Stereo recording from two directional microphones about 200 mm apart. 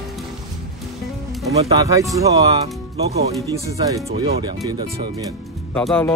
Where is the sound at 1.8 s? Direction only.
15° right (ahead or behind).